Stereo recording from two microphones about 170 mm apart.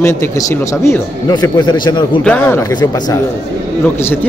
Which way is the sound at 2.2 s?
10° left (ahead or behind).